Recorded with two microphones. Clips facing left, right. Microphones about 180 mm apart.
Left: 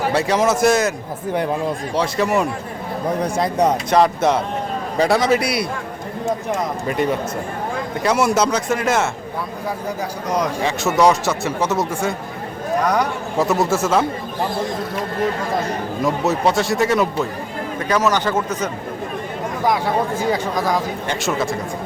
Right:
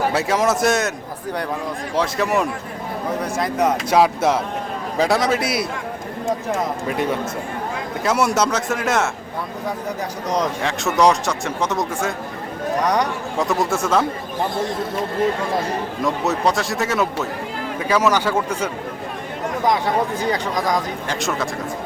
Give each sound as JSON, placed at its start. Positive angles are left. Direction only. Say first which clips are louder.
{"t": 0.1, "sound": "speech", "louder": "left 2 dB", "side_deg": 0}
{"t": 2.0, "sound": "speech", "louder": "left 1 dB", "side_deg": 0}
{"t": 3.2, "sound": "speech", "louder": "left 2 dB", "side_deg": 35}
{"t": 3.8, "sound": "speech", "louder": "left 1 dB", "side_deg": -5}
{"t": 6.8, "sound": "speech", "louder": "left 2 dB", "side_deg": 0}
{"t": 10.2, "sound": "speech", "louder": "left 1 dB", "side_deg": 0}
{"t": 16.0, "sound": "speech", "louder": "left 2 dB", "side_deg": 0}
{"t": 19.7, "sound": "speech", "louder": "even", "side_deg": -15}
{"t": 21.1, "sound": "speech", "louder": "left 2 dB", "side_deg": 0}